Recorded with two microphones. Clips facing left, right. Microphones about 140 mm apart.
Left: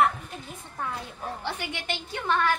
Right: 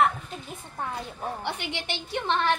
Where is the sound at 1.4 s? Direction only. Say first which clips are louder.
Right 1 dB; 20° right (ahead or behind).